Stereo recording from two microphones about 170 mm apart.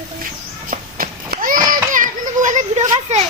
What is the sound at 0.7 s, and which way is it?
Run, 55° right (ahead or behind).